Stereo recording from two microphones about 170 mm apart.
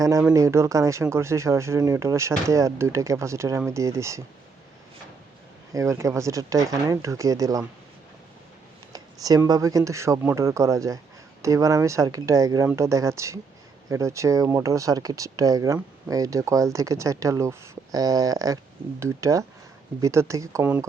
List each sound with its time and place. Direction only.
0.0 s speech: 20° right (ahead or behind)
5.7 s speech: 20° right (ahead or behind)
8.9 s speech: 20° right (ahead or behind)